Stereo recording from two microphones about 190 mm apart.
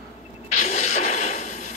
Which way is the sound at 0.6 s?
35° left (ahead or behind).